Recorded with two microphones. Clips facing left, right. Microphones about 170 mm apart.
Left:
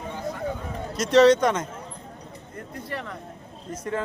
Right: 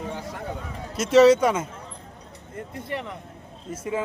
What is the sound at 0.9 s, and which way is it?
Speech, 5° right (ahead or behind).